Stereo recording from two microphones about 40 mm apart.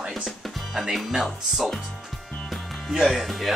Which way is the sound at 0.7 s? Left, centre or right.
Centre.